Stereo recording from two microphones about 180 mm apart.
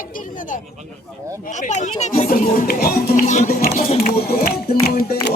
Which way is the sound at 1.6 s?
40° left (ahead or behind).